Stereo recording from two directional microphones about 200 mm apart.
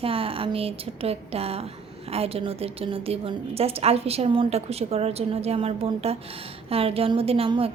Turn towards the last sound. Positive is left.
turn(degrees=-30)  # may be behind; listen again after turning